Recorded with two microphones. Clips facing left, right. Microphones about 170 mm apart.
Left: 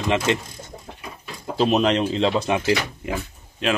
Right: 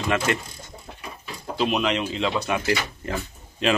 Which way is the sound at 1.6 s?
35° left (ahead or behind).